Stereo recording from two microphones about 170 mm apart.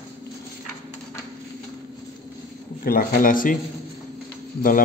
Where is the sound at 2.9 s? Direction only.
55° left (ahead or behind).